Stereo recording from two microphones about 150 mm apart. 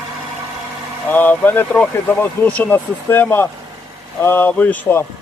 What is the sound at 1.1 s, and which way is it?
Speech, 10° left (ahead or behind).